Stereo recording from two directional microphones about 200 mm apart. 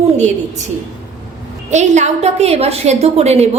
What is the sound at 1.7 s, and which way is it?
A woman's voice, 35° right (ahead or behind).